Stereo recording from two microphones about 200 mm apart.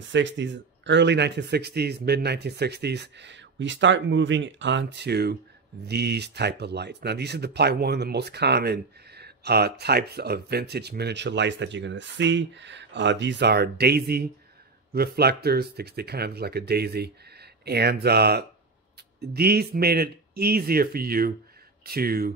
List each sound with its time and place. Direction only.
0.1 s speech: 65° right (ahead or behind)